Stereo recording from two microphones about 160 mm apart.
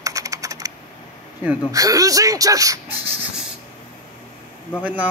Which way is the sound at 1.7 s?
20° right (ahead or behind).